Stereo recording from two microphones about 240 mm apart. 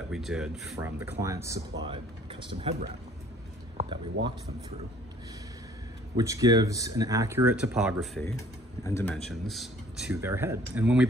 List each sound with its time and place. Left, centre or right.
0.1 s speech: centre
2.4 s speech: right
3.7 s speech: centre
6.1 s speech: centre
8.4 s speech: centre